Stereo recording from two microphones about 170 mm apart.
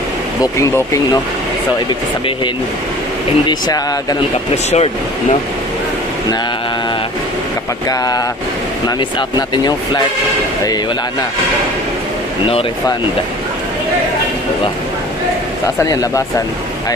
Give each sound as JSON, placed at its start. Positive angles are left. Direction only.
{"t": 0.4, "sound": "speech", "side_deg": 20}
{"t": 3.4, "sound": "speech", "side_deg": 25}
{"t": 4.6, "sound": "speech", "side_deg": 40}
{"t": 7.9, "sound": "speech", "side_deg": 20}
{"t": 12.4, "sound": "speech", "side_deg": 35}
{"t": 15.6, "sound": "speech", "side_deg": 20}